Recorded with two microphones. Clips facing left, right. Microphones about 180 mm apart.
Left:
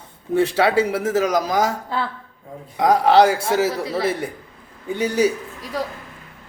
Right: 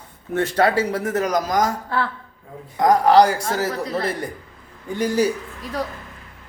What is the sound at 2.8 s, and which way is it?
A man's voice, 5° left (ahead or behind).